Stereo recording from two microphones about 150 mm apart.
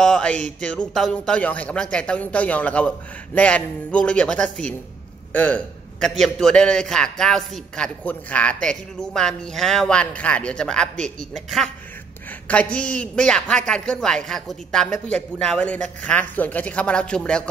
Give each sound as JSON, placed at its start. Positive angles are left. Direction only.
{"t": 0.0, "sound": "a man's voice", "side_deg": 5}